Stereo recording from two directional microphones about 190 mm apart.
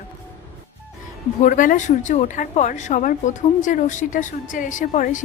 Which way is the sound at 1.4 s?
45° left (ahead or behind).